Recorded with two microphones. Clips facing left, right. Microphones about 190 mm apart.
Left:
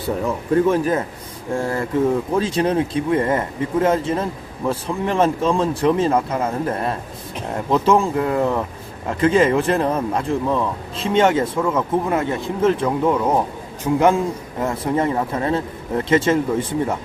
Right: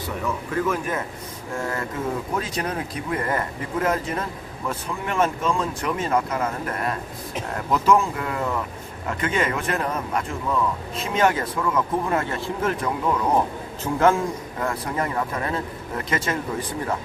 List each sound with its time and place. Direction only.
0.5 s speech: 30° left (ahead or behind)